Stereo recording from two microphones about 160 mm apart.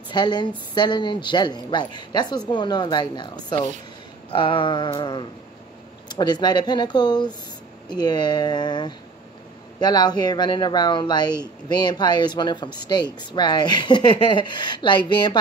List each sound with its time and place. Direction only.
0.1 s speech: 25° left (ahead or behind)
4.3 s a sound: 30° left (ahead or behind)
6.0 s speech: 25° left (ahead or behind)